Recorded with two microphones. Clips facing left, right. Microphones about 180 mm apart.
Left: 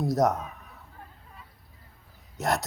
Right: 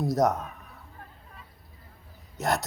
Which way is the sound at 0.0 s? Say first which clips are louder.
Even; centre (ahead or behind).